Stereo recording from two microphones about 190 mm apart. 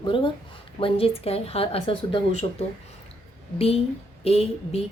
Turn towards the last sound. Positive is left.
turn(degrees=30)  # may be behind; listen again after turning